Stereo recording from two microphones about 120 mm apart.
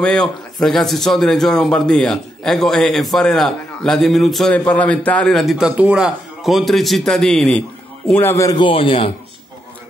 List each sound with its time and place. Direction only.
0.0 s a man's voice: 5° left (ahead or behind)
8.1 s a man's voice: 20° left (ahead or behind)
8.5 s a man's voice: 45° left (ahead or behind)